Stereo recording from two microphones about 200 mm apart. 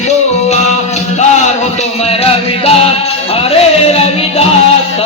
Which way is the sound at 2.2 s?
30° left (ahead or behind).